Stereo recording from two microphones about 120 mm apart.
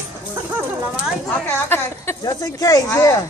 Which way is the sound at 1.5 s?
20° left (ahead or behind).